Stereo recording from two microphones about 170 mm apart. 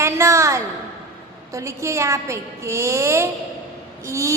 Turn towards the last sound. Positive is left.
turn(degrees=-15)  # may be behind; listen again after turning